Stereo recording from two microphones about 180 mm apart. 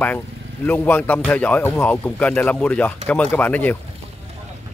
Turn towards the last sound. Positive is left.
turn(degrees=10)  # may be behind; listen again after turning